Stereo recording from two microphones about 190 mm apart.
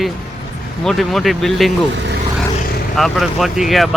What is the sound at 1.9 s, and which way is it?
Vehicle, 65° right (ahead or behind).